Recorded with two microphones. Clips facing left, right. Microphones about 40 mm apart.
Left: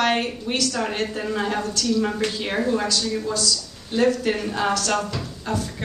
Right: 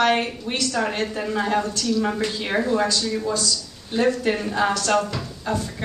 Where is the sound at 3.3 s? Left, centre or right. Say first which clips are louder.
Even; right.